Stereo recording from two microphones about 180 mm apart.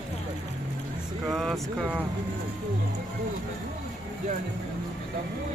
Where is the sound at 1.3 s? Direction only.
Centre (ahead or behind).